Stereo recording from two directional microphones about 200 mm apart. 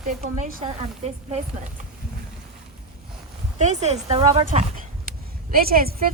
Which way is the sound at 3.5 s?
35° right (ahead or behind).